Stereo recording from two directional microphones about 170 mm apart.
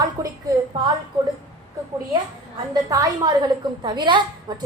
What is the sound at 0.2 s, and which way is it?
Speech, 20° right (ahead or behind).